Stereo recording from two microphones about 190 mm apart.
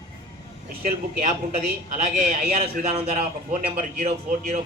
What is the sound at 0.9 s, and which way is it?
A man's voice, 35° right (ahead or behind).